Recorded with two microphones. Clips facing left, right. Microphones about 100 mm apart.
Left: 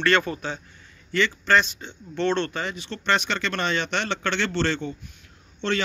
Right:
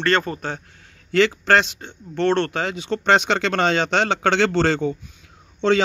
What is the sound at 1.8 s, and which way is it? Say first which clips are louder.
A man's voice: right 4 dB; 55° right (ahead or behind).